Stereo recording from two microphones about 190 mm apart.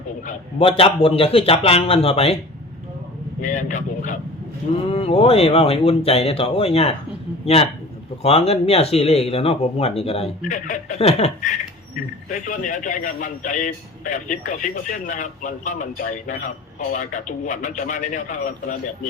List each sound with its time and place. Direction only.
0.6 s a man's voice: 30° left (ahead or behind)
3.4 s a man's voice: 40° left (ahead or behind)